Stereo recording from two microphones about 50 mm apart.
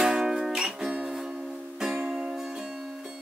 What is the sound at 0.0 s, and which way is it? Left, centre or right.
Music, centre.